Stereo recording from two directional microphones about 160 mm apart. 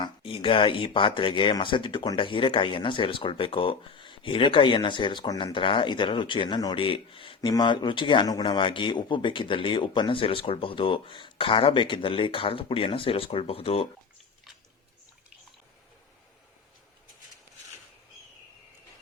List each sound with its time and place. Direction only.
0.0 s speech: 35° left (ahead or behind)